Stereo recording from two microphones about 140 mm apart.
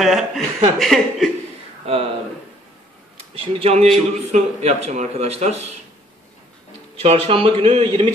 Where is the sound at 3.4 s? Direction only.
45° right (ahead or behind).